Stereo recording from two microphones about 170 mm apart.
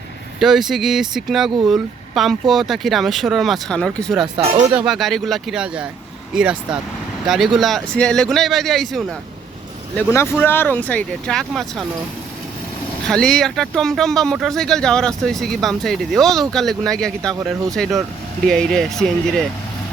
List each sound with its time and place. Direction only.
0.3 s speech: centre (ahead or behind)
4.4 s speech: 35° right (ahead or behind)
4.6 s speech: 10° right (ahead or behind)
10.1 s speech: 15° left (ahead or behind)
13.1 s speech: 5° left (ahead or behind)